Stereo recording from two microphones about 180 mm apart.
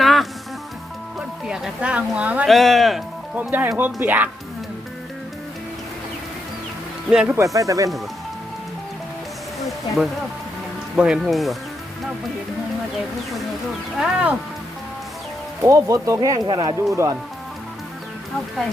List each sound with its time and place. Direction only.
0.0 s music: centre (ahead or behind)
1.5 s speech: 5° right (ahead or behind)
7.1 s speech: 5° right (ahead or behind)
7.4 s speech: 20° right (ahead or behind)
10.9 s speech: 5° right (ahead or behind)
14.0 s speech: 5° right (ahead or behind)
15.6 s speech: 15° right (ahead or behind)